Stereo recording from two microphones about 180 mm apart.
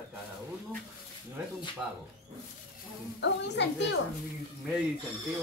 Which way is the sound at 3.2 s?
75° left (ahead or behind).